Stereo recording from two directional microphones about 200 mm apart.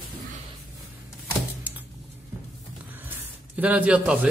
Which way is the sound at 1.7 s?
10° right (ahead or behind).